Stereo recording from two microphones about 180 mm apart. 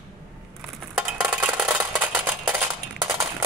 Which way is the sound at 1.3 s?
5° right (ahead or behind).